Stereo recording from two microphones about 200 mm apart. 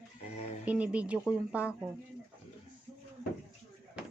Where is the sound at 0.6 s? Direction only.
5° right (ahead or behind).